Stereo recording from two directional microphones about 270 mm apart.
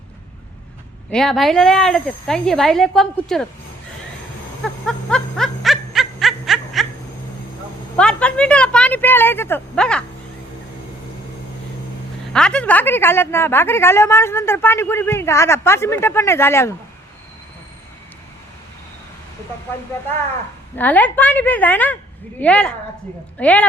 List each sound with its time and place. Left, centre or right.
1.1 s speech: centre
4.9 s laughter: centre
7.9 s a sound: centre
12.3 s a woman's voice: centre
20.7 s speech: centre